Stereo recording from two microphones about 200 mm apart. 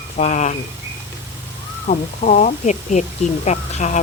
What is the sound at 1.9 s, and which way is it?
Speech, 40° left (ahead or behind).